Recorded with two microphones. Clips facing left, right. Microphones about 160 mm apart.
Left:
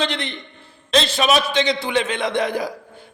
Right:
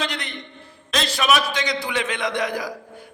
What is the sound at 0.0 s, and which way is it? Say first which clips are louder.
A man's voice: left 4 dB; 30° left (ahead or behind).